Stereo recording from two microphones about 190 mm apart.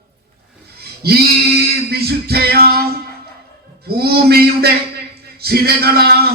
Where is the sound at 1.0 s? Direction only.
55° right (ahead or behind).